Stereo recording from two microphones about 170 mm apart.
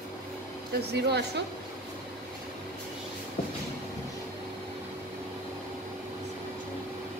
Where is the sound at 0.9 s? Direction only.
75° right (ahead or behind).